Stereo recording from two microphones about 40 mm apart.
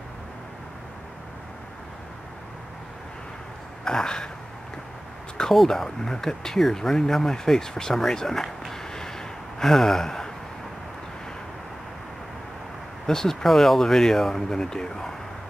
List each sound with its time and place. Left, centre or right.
3.8 s speech: centre
5.4 s speech: centre
9.6 s gasp: centre
13.0 s speech: centre